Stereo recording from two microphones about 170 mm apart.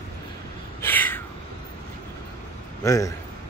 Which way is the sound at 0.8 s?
10° left (ahead or behind).